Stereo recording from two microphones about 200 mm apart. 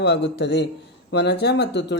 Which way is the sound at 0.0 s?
55° left (ahead or behind).